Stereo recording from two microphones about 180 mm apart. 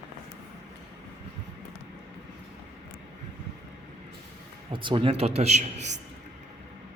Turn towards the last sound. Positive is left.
turn(degrees=-40)  # may be behind; listen again after turning